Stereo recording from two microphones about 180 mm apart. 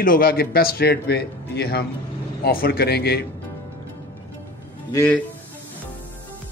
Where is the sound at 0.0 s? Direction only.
55° left (ahead or behind).